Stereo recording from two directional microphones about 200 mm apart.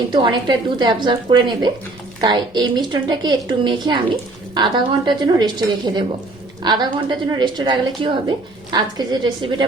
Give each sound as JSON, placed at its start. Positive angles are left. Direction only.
{"t": 0.1, "sound": "a woman's voice", "side_deg": -25}